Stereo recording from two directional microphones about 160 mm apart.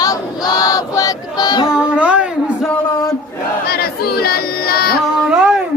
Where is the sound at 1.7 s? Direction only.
5° right (ahead or behind).